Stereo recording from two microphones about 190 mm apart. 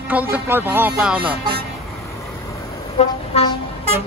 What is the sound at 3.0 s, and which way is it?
Vehicle, 30° left (ahead or behind).